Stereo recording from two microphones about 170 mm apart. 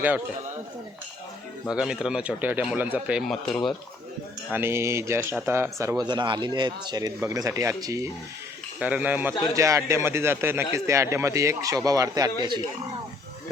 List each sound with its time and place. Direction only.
1.7 s speech: 5° right (ahead or behind)
4.5 s speech: 15° right (ahead or behind)
8.8 s a man's voice: 10° right (ahead or behind)